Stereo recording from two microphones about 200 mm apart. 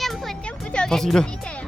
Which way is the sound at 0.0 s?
Centre (ahead or behind).